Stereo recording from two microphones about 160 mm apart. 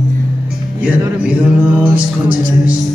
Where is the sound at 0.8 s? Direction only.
10° right (ahead or behind).